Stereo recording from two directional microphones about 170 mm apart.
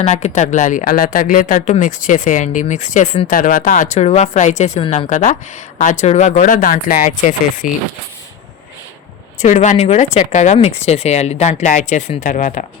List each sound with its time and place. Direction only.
0.0 s speech: 45° left (ahead or behind)
9.4 s speech: 45° left (ahead or behind)